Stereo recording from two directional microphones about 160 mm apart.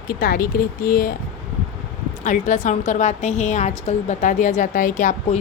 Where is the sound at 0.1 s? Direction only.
65° left (ahead or behind).